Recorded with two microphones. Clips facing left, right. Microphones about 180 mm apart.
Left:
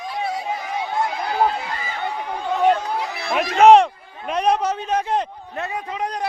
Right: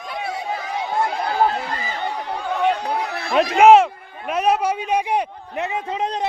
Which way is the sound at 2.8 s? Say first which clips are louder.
Right 2 dB; 65° right (ahead or behind).